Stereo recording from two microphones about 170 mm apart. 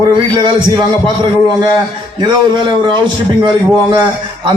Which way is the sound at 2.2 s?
25° right (ahead or behind).